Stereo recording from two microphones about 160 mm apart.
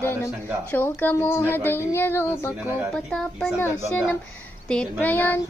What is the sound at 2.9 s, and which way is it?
Speech, 5° left (ahead or behind).